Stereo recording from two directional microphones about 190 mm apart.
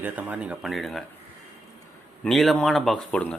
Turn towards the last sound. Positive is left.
turn(degrees=5)  # may be behind; listen again after turning